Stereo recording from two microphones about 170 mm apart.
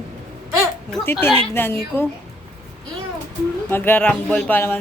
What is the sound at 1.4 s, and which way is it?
Speech, 15° left (ahead or behind).